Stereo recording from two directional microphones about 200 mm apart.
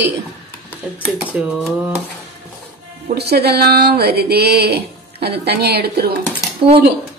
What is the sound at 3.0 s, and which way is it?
Speech, 55° right (ahead or behind).